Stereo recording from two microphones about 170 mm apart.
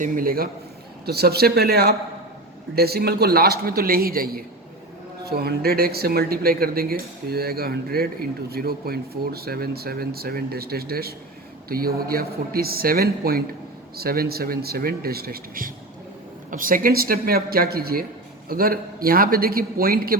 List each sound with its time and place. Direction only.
0.0 s speech: 55° right (ahead or behind)
1.0 s speech: 70° right (ahead or behind)